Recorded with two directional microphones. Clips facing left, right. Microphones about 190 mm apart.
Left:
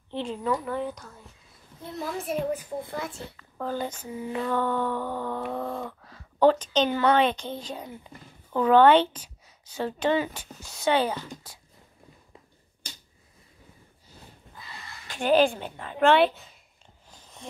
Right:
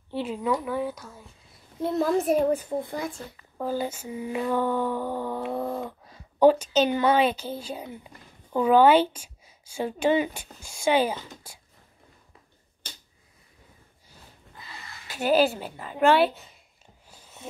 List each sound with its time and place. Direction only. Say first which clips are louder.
0.1 s speech: right 1 dB; 10° right (ahead or behind)
2.1 s a woman's voice: right 6 dB; 40° right (ahead or behind)
2.9 s speech: right 2 dB; 15° right (ahead or behind)
15.0 s speech: even; 5° right (ahead or behind)
17.1 s a sound: even; 10° right (ahead or behind)